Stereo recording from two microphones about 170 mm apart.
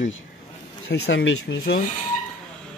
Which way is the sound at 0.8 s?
85° left.